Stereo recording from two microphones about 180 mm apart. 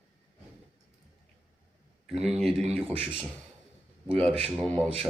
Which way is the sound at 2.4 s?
35° right (ahead or behind).